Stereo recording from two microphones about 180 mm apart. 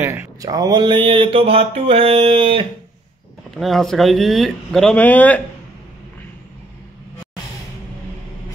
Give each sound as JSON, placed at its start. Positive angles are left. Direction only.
{"t": 0.0, "sound": "speech", "side_deg": -15}
{"t": 3.5, "sound": "speech", "side_deg": 0}